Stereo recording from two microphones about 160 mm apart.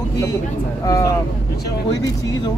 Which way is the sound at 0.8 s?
20° left (ahead or behind).